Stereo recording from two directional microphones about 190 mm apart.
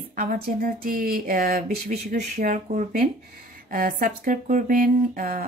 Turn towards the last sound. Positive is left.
turn(degrees=-45)  # may be behind; listen again after turning